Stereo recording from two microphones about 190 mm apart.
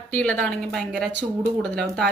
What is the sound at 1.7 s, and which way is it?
Speech, 60° right (ahead or behind).